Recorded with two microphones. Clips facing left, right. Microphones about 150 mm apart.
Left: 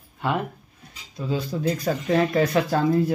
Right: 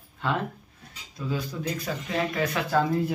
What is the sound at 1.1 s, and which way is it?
Speech, 25° left (ahead or behind).